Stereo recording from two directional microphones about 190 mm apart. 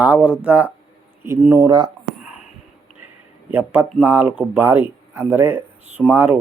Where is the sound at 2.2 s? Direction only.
5° right (ahead or behind).